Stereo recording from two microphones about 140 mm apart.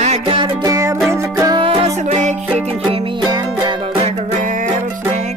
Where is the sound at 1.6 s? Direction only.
45° right (ahead or behind).